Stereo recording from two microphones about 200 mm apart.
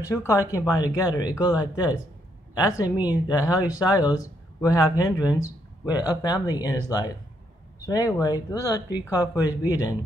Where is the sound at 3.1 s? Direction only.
20° left (ahead or behind).